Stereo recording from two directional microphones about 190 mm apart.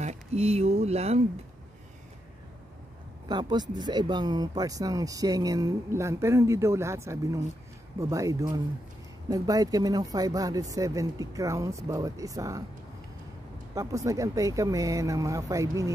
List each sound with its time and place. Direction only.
0.0 s speech: 35° right (ahead or behind)
3.3 s speech: 20° right (ahead or behind)
13.7 s speech: 15° right (ahead or behind)